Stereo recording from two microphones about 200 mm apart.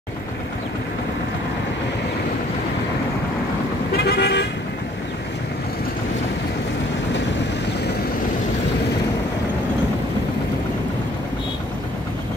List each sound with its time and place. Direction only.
3.9 s vehicle: 55° left (ahead or behind)